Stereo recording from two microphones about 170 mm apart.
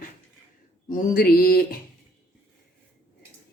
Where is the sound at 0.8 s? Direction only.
50° left (ahead or behind).